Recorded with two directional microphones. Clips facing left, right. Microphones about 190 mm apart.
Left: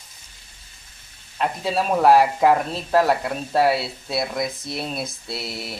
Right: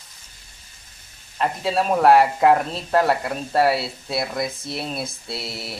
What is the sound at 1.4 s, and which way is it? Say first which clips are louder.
Speech: right 1 dB; centre (ahead or behind).